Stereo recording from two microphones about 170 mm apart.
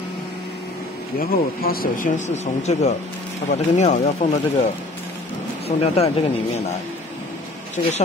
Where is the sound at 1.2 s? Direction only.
60° left (ahead or behind); by 4.0 s 45° left (ahead or behind).